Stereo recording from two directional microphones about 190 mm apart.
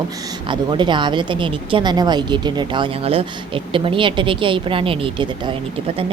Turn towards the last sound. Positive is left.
turn(degrees=-25)  # may be behind; listen again after turning